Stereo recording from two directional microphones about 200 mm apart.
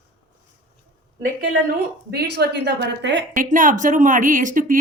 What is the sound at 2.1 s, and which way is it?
A woman's voice, 55° right (ahead or behind).